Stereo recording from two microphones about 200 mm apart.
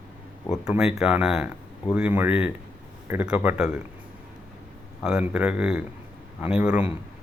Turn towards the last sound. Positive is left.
turn(degrees=-5)  # may be behind; listen again after turning